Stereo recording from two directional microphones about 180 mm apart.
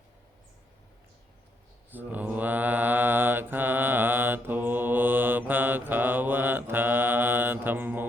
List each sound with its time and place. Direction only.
1.9 s mantra: 10° right (ahead or behind)